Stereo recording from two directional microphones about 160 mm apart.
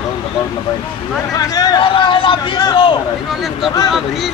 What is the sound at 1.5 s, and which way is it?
Speech, 25° left (ahead or behind).